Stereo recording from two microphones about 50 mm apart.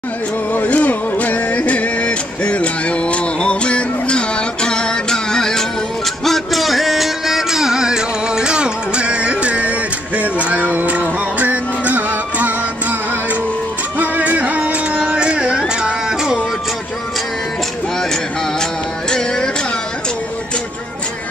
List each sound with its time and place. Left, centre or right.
0.5 s music: left; by 12.5 s right
13.9 s music: right; by 16.3 s centre
18.6 s music: centre